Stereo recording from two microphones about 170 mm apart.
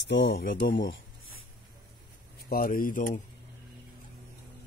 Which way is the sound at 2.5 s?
60° left (ahead or behind).